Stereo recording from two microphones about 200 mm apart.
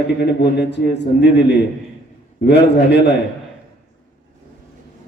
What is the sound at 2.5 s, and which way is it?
Speech, 60° left (ahead or behind).